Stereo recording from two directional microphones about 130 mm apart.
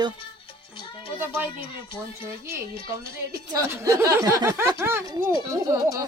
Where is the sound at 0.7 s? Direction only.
40° left (ahead or behind).